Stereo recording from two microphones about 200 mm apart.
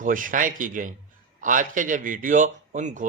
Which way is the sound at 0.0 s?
40° right (ahead or behind).